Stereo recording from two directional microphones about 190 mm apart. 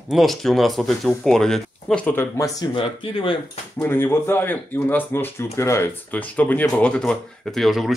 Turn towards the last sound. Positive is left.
turn(degrees=0)  # may be behind; listen again after turning